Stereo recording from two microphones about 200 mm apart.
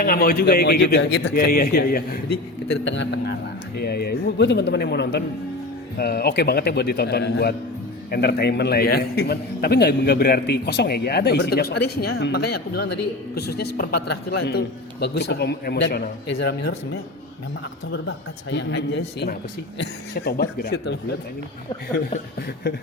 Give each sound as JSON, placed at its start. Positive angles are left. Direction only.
{"t": 0.0, "sound": "a man's voice", "side_deg": 50}
{"t": 18.5, "sound": "a man's voice", "side_deg": 60}